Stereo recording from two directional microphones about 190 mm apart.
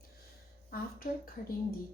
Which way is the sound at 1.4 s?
45° left (ahead or behind).